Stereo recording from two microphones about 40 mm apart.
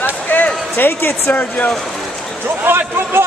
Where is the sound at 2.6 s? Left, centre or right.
Right.